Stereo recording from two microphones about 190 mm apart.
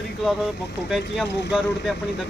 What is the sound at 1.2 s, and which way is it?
Speech, 65° left (ahead or behind).